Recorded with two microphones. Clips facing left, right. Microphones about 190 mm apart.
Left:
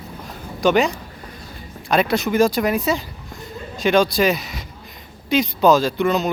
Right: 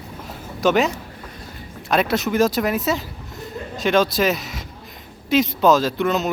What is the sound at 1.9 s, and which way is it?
Speech, centre (ahead or behind).